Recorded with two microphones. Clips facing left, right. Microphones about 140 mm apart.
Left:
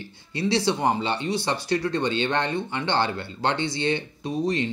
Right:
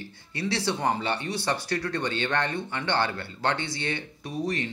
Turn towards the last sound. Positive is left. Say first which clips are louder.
# left 5 dB
turn(degrees=25)  # may be behind; listen again after turning